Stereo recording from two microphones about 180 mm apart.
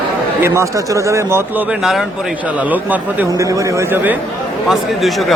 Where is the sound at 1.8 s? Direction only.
Centre (ahead or behind).